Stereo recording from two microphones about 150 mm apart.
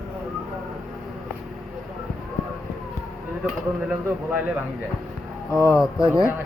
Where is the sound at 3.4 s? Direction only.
5° right (ahead or behind).